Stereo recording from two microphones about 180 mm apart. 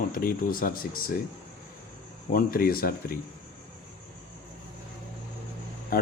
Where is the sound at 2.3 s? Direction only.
55° left (ahead or behind).